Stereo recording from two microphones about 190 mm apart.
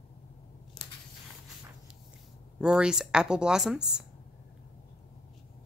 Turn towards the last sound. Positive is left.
turn(degrees=-5)  # may be behind; listen again after turning